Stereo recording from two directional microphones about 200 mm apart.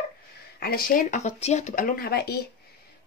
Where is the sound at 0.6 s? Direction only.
45° left (ahead or behind).